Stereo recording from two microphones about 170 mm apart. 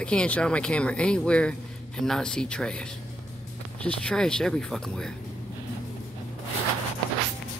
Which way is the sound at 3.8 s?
5° left (ahead or behind).